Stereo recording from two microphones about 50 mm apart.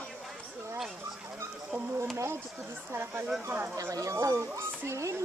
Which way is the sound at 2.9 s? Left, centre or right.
Right.